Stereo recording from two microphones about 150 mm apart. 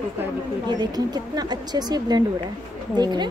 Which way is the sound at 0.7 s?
30° right (ahead or behind).